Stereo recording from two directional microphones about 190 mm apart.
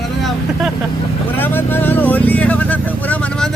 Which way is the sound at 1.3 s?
10° left (ahead or behind).